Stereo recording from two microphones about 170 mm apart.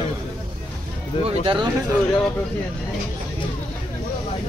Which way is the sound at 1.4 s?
30° right (ahead or behind).